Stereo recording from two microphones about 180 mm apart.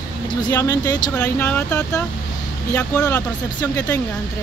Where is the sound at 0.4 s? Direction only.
20° left (ahead or behind).